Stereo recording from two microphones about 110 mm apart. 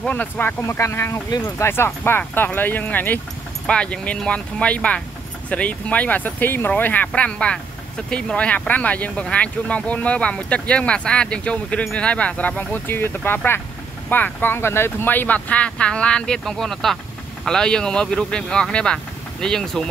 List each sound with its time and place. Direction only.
0.0 s speech: 15° left (ahead or behind)